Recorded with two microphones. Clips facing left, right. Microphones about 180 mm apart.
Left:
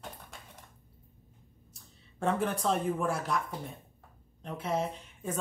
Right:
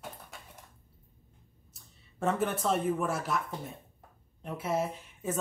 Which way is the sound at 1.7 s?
Centre (ahead or behind).